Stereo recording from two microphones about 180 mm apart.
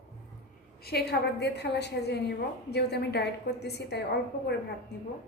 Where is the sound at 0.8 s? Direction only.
60° left (ahead or behind).